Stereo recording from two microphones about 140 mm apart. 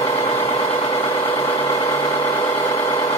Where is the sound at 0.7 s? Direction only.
40° left (ahead or behind).